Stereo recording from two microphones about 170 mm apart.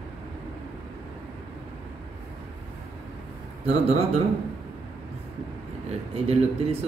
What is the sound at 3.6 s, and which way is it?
Mantra, 40° right (ahead or behind).